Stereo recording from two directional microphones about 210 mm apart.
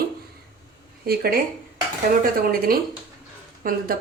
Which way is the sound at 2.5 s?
45° right (ahead or behind).